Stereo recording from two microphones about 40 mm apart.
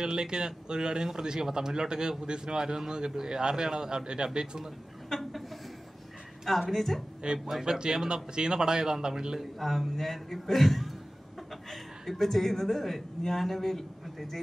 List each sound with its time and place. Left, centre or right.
0.0 s speech: centre
5.1 s a sound: centre
6.7 s a man's voice: centre
7.3 s speech: centre
9.6 s a man's voice: centre